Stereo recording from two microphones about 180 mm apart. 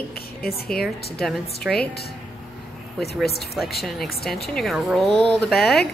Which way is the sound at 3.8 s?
Centre (ahead or behind).